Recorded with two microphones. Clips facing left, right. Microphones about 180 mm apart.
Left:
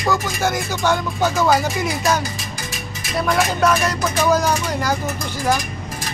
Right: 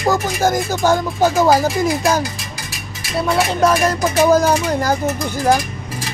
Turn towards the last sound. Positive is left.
turn(degrees=-40)  # may be behind; listen again after turning